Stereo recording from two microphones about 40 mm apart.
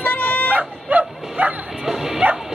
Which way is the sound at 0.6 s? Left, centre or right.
Right.